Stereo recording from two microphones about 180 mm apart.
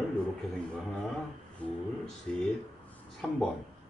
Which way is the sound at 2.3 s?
5° left (ahead or behind).